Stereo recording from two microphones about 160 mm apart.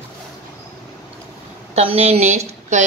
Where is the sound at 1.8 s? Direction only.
40° right (ahead or behind).